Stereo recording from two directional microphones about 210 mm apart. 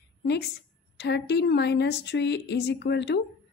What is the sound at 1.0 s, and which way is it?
A woman's voice, 55° left (ahead or behind).